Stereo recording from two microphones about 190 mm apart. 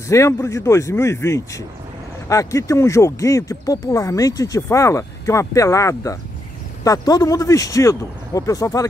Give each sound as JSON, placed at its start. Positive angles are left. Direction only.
{"t": 0.1, "sound": "speech", "side_deg": 15}